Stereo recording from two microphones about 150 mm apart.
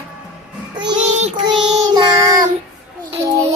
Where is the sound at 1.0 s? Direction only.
50° right (ahead or behind).